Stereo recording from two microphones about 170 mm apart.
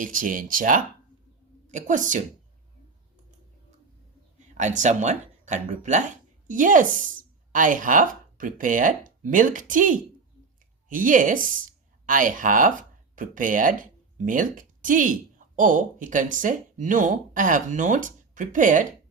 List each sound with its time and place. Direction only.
0.0 s a woman's voice: 50° right (ahead or behind)
4.4 s a woman's voice: 45° right (ahead or behind)